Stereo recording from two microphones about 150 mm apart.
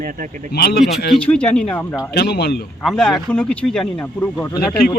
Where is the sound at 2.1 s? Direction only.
90° left.